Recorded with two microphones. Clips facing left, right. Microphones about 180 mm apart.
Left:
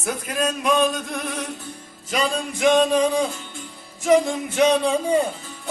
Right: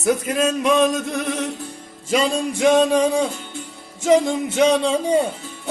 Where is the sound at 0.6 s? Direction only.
25° right (ahead or behind).